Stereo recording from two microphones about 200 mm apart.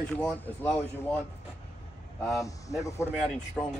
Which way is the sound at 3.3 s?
5° left (ahead or behind).